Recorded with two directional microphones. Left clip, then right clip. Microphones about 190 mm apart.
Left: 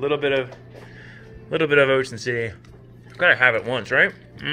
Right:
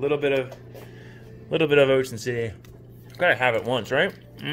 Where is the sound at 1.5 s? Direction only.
20° right (ahead or behind).